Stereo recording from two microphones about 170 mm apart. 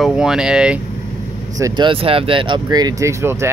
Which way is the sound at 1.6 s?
30° right (ahead or behind).